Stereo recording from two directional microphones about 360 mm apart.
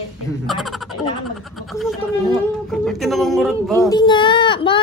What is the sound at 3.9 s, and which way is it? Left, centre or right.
Speech, centre.